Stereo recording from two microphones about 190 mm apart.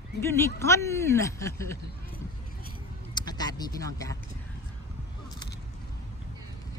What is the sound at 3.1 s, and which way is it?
Vehicle, 20° left (ahead or behind).